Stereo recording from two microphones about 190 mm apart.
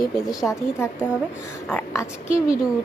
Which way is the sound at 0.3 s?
20° left (ahead or behind).